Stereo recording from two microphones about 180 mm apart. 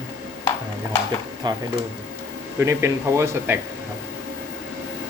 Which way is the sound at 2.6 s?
15° right (ahead or behind).